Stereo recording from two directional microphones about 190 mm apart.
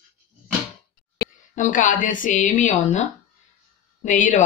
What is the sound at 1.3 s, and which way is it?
A woman's voice, 40° left (ahead or behind).